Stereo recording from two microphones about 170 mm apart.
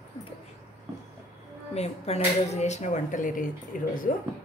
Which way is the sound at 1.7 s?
40° left (ahead or behind).